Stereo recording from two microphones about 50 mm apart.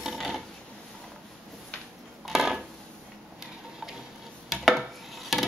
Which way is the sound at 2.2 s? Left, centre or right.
Centre.